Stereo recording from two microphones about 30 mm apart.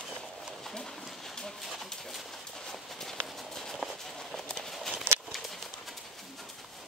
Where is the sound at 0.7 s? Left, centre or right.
Centre.